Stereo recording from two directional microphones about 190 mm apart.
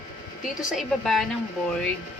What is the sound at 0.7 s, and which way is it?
Speech, centre (ahead or behind).